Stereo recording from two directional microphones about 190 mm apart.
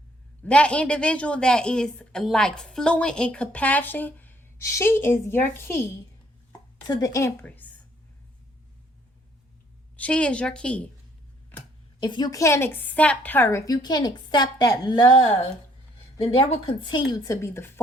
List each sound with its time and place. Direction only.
0.4 s a woman's voice: 5° left (ahead or behind)
6.8 s a woman's voice: 15° left (ahead or behind)
10.0 s a woman's voice: 5° left (ahead or behind)
11.9 s a woman's voice: 25° left (ahead or behind)
16.1 s a woman's voice: 30° left (ahead or behind); by 17.7 s 15° left (ahead or behind)